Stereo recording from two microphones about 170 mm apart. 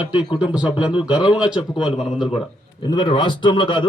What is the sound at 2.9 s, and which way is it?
Speech, 30° left (ahead or behind).